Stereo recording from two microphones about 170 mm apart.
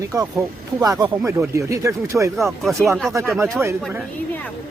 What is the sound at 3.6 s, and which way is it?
Speech, 15° right (ahead or behind).